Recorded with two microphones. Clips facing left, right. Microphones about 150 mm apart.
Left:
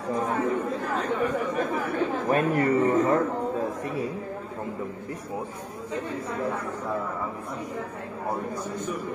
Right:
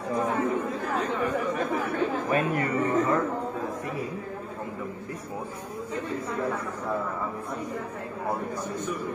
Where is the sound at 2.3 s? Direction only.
35° left (ahead or behind).